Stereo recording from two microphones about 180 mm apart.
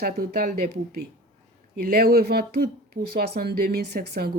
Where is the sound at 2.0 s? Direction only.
60° right (ahead or behind).